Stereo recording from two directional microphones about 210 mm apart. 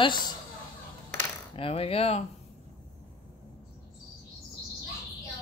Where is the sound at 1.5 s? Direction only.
25° left (ahead or behind).